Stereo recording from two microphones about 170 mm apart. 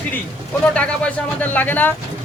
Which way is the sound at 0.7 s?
5° left (ahead or behind).